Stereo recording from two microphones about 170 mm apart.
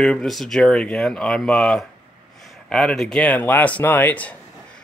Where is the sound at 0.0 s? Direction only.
5° left (ahead or behind).